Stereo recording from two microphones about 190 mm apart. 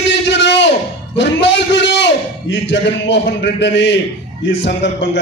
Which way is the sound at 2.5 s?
70° left (ahead or behind).